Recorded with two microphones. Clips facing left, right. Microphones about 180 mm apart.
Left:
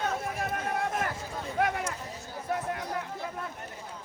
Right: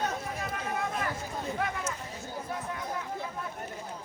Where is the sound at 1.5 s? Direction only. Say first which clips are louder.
Left 7 dB; 60° left (ahead or behind).